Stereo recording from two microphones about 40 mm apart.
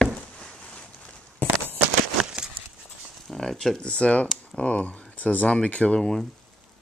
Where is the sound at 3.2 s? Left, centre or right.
Centre.